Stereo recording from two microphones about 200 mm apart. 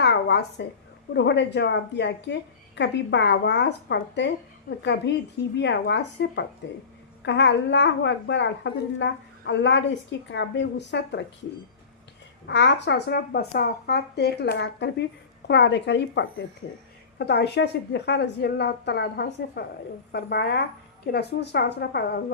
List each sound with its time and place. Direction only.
0.0 s a sound: 60° left (ahead or behind)
1.1 s a woman's voice: 60° left (ahead or behind)
12.5 s a woman's voice: 60° left (ahead or behind)